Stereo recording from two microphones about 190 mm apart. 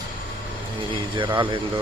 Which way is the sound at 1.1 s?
25° right (ahead or behind).